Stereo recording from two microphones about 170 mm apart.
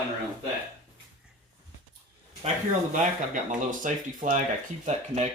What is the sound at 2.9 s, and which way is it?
Speech, 50° right (ahead or behind).